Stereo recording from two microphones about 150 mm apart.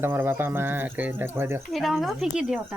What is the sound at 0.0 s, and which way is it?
Speech, 15° right (ahead or behind).